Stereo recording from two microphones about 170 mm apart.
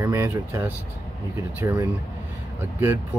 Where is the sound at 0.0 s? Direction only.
15° right (ahead or behind).